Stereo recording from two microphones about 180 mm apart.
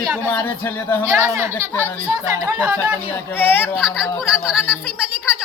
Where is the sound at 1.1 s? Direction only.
15° right (ahead or behind).